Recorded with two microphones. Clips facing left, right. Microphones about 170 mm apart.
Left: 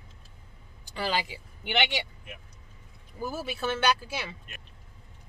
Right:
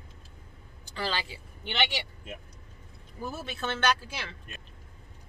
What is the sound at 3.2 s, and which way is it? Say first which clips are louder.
A man's voice: left 3 dB; 10° left (ahead or behind).